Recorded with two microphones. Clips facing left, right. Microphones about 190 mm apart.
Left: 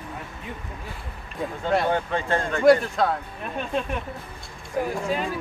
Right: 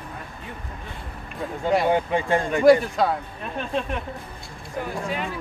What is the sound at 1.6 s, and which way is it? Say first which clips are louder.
Speech: right 3 dB; 10° right (ahead or behind).